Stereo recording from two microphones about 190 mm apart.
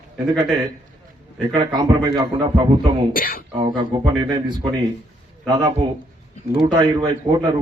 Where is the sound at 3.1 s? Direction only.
50° left (ahead or behind).